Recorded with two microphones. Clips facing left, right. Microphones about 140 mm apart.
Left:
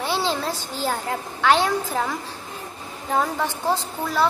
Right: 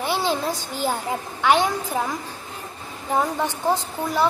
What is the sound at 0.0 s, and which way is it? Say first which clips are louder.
A child's voice: right 1 dB; 15° right (ahead or behind).